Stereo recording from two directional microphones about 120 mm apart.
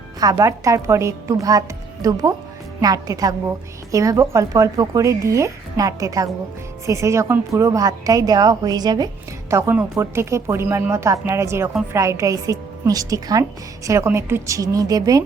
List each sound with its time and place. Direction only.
0.2 s a woman's voice: 30° right (ahead or behind)
9.5 s speech: 25° right (ahead or behind)